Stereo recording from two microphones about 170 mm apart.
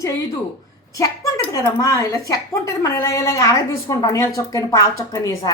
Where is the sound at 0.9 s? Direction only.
20° left (ahead or behind).